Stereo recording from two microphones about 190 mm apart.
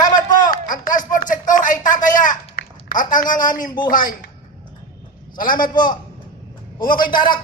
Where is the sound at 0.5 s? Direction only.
45° left (ahead or behind).